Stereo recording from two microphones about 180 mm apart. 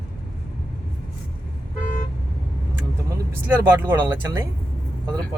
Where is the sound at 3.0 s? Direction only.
15° right (ahead or behind).